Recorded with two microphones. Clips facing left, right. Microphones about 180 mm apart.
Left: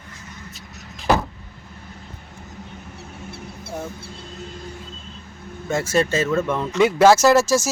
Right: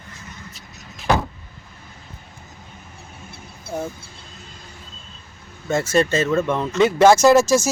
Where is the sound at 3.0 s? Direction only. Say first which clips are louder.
Left 5 dB; 75° left (ahead or behind).